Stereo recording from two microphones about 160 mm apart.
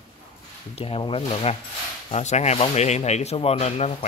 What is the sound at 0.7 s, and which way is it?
Speech, 35° left (ahead or behind).